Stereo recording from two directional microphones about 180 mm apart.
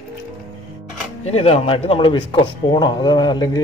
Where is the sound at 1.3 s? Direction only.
35° left (ahead or behind).